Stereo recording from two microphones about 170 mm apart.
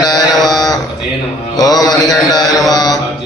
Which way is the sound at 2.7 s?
20° left (ahead or behind).